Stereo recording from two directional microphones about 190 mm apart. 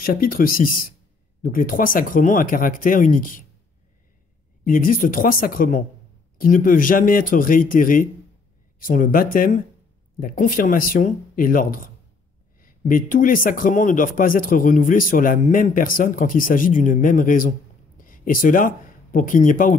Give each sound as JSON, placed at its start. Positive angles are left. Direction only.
{"t": 0.0, "sound": "speech", "side_deg": 50}
{"t": 4.6, "sound": "speech", "side_deg": 45}